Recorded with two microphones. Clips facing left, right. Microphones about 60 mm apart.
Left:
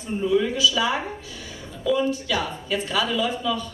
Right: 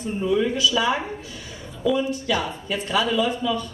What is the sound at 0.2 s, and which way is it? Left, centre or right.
Speech, centre.